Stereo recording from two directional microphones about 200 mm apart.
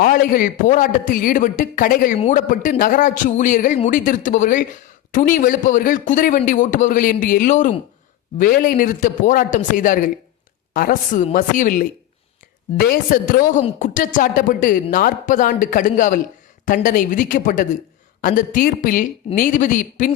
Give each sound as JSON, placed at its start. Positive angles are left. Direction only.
{"t": 0.0, "sound": "a woman's voice", "side_deg": 45}
{"t": 12.9, "sound": "a woman's voice", "side_deg": 45}